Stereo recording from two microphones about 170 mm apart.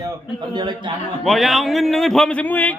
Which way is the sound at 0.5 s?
25° right (ahead or behind).